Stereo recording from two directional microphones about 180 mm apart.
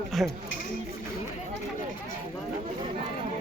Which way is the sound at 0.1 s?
Centre (ahead or behind).